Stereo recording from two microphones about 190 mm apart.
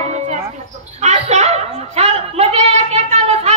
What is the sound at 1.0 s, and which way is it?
Speech, 35° right (ahead or behind).